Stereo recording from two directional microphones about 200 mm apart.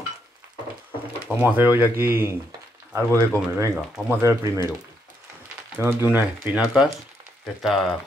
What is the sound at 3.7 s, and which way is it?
Speech, 5° right (ahead or behind).